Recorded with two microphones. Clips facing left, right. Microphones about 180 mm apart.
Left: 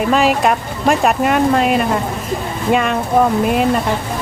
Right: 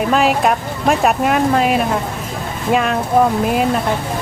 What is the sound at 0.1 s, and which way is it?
Speech, centre (ahead or behind).